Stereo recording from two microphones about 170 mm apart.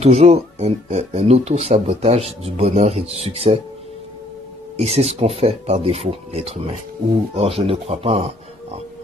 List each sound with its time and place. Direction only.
0.0 s speech: 40° right (ahead or behind)
4.7 s speech: 40° right (ahead or behind)